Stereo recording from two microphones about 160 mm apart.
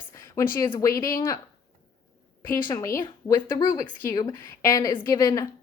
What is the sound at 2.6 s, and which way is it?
A woman's voice, 20° left (ahead or behind).